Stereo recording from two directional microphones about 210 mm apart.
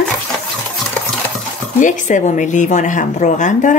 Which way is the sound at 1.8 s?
35° left (ahead or behind).